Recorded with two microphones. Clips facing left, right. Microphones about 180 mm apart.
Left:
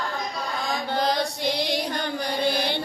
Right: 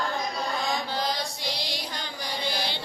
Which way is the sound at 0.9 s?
55° left (ahead or behind).